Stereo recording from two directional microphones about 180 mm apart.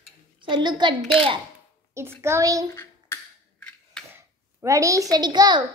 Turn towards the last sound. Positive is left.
turn(degrees=-25)  # may be behind; listen again after turning